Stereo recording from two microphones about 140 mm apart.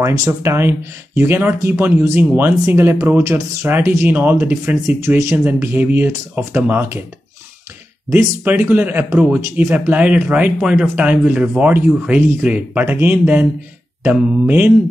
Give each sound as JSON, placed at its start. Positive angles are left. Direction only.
{"t": 0.0, "sound": "speech", "side_deg": -20}
{"t": 8.1, "sound": "speech", "side_deg": -10}